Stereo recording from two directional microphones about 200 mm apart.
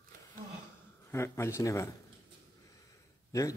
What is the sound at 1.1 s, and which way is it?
Speech, 15° left (ahead or behind).